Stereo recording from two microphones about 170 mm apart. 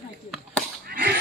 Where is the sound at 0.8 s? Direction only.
65° right (ahead or behind).